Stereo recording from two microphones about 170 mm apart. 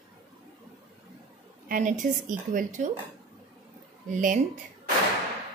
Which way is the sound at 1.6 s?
50° right (ahead or behind).